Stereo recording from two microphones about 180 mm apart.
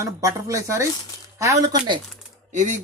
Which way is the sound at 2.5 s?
45° right (ahead or behind).